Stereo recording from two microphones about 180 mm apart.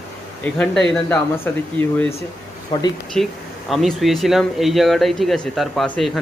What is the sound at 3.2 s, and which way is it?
Speech, centre (ahead or behind).